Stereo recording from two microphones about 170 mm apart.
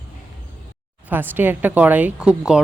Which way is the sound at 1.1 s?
10° right (ahead or behind).